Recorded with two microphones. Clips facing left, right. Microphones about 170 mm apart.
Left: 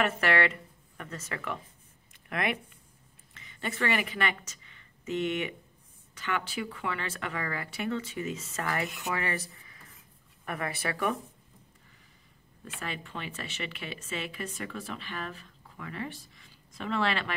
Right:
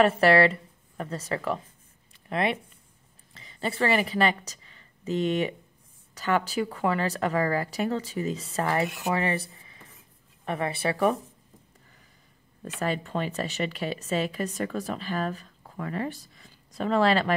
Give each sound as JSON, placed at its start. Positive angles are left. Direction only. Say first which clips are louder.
{"t": 0.0, "sound": "speech", "louder": "right 8 dB", "side_deg": -30}
{"t": 12.6, "sound": "speech", "louder": "right 10 dB", "side_deg": -40}